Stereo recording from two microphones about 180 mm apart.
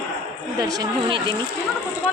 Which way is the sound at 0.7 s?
25° right (ahead or behind).